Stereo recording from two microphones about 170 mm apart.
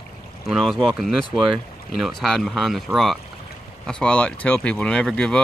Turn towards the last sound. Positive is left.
turn(degrees=5)  # may be behind; listen again after turning